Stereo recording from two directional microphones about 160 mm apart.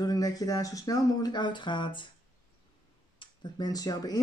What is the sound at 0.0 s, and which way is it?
Speech, 25° left (ahead or behind).